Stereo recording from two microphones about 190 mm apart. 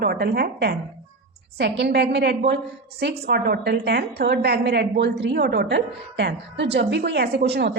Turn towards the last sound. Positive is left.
turn(degrees=-60)  # may be behind; listen again after turning